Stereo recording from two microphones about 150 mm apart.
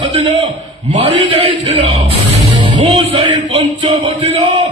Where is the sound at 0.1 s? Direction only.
40° right (ahead or behind).